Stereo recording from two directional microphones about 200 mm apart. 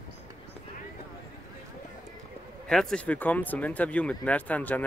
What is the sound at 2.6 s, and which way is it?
Speech, 5° left (ahead or behind).